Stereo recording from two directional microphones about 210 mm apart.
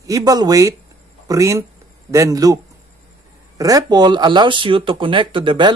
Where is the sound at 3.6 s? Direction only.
15° right (ahead or behind).